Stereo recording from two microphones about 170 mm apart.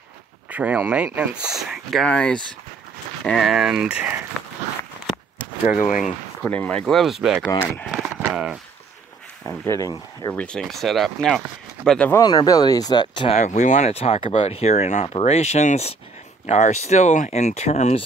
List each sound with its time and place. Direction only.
0.5 s speech: 10° right (ahead or behind)
5.7 s speech: 50° left (ahead or behind)
6.4 s speech: 5° left (ahead or behind)
7.9 s clip-clop: 10° right (ahead or behind)
9.7 s speech: 20° left (ahead or behind)
10.3 s speech: 5° left (ahead or behind)
12.2 s speech: 25° left (ahead or behind)
13.4 s speech: 45° left (ahead or behind)